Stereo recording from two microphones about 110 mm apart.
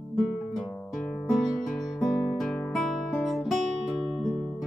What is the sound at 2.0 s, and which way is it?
Guitar, 5° left (ahead or behind).